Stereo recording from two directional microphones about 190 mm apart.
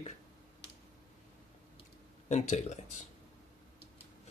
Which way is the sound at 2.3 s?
35° left (ahead or behind).